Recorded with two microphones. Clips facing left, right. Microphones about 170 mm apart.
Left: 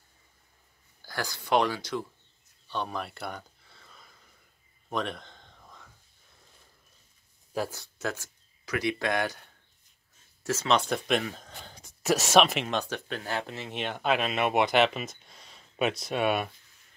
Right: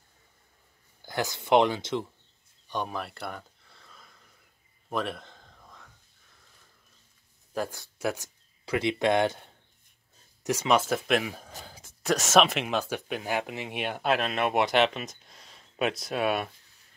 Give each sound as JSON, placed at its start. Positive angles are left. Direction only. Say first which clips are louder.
{"t": 1.0, "sound": "speech", "louder": "right 4 dB", "side_deg": -20}
{"t": 2.7, "sound": "speech", "louder": "right 1 dB", "side_deg": -10}
{"t": 3.0, "sound": "a sound", "louder": "even", "side_deg": 0}
{"t": 7.5, "sound": "speech", "louder": "even", "side_deg": 5}
{"t": 8.0, "sound": "speech", "louder": "right 3 dB", "side_deg": -15}
{"t": 8.6, "sound": "speech", "louder": "right 4 dB", "side_deg": -25}